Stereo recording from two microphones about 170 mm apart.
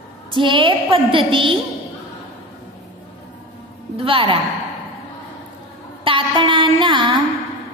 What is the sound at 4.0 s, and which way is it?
Speech, 30° right (ahead or behind).